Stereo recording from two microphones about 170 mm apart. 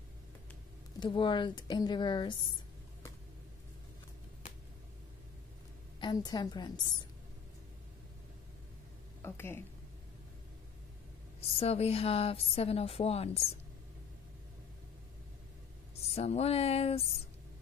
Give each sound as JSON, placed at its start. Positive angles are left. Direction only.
{"t": 0.9, "sound": "a woman's voice", "side_deg": 30}
{"t": 5.9, "sound": "a woman's voice", "side_deg": 25}
{"t": 9.2, "sound": "speech", "side_deg": 15}
{"t": 11.5, "sound": "a woman's voice", "side_deg": 35}
{"t": 16.0, "sound": "a woman's voice", "side_deg": 40}